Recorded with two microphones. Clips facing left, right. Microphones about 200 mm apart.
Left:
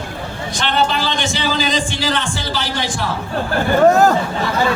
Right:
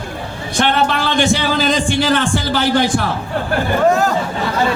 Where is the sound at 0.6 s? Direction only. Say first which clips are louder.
Right 3 dB; 55° right (ahead or behind).